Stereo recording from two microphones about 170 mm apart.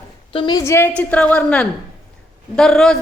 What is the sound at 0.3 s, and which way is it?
Speech, 25° left (ahead or behind).